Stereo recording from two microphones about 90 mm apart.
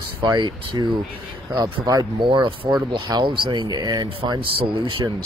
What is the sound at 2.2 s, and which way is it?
Speech, 70° right (ahead or behind).